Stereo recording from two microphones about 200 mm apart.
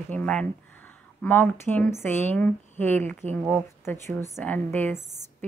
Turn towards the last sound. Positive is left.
turn(degrees=10)  # may be behind; listen again after turning